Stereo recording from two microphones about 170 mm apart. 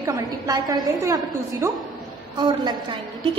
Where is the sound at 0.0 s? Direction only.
20° right (ahead or behind).